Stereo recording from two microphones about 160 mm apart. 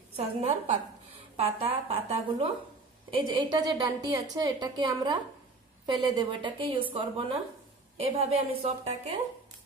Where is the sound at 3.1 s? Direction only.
30° right (ahead or behind).